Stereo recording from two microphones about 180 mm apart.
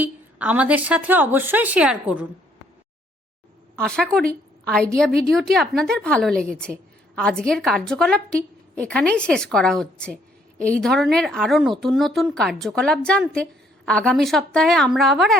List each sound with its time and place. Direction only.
0.0 s a woman's voice: 10° right (ahead or behind)
3.8 s a woman's voice: 5° left (ahead or behind)